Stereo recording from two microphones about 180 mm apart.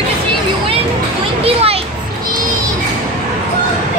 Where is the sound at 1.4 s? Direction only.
35° right (ahead or behind).